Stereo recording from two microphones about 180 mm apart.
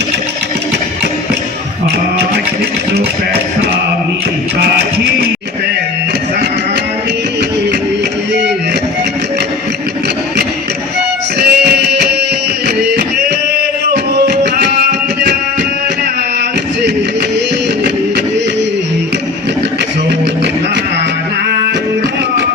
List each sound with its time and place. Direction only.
11.3 s music: 60° right (ahead or behind)
13.9 s music: 65° right (ahead or behind)